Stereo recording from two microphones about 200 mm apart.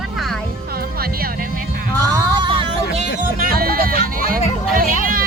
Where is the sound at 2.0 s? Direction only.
25° right (ahead or behind).